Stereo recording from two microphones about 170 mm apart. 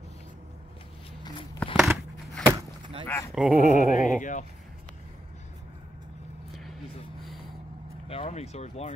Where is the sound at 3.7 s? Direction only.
50° left (ahead or behind).